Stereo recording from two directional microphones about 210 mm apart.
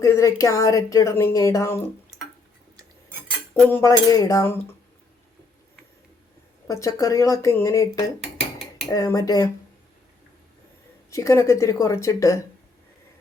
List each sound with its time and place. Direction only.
0.0 s speech: 15° left (ahead or behind)
3.5 s speech: 10° left (ahead or behind)
6.7 s speech: 15° left (ahead or behind)
11.1 s speech: 15° left (ahead or behind)